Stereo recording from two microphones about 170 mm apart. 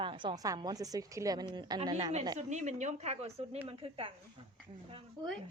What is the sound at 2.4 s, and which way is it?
A woman's voice, 45° right (ahead or behind).